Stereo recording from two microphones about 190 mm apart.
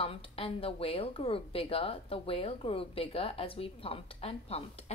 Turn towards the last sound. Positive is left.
turn(degrees=30)  # may be behind; listen again after turning